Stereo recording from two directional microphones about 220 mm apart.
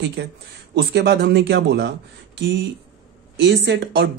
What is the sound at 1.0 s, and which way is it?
Speech, 50° right (ahead or behind).